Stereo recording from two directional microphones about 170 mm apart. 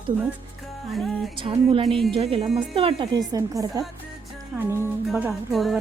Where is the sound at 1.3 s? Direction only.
30° right (ahead or behind).